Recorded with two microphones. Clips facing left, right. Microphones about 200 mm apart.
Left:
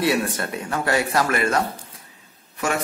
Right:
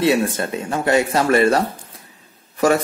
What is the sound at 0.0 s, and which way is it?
A man's voice, 25° right (ahead or behind).